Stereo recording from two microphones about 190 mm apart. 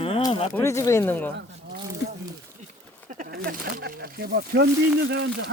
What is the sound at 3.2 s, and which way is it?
Speech, 50° right (ahead or behind).